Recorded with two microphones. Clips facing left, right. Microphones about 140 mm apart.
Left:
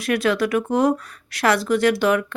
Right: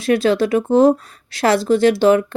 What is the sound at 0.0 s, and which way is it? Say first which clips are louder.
Speech: right 5 dB; 30° right (ahead or behind).